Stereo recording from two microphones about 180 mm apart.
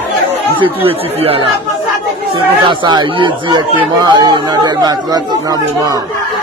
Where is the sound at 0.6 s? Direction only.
30° right (ahead or behind).